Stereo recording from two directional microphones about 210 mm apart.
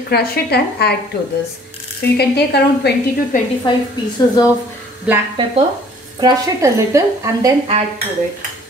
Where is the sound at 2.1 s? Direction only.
50° left (ahead or behind).